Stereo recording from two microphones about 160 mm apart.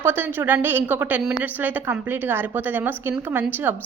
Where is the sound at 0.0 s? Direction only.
15° right (ahead or behind).